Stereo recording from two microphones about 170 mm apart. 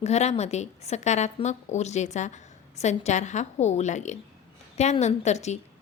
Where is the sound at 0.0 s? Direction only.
40° left (ahead or behind).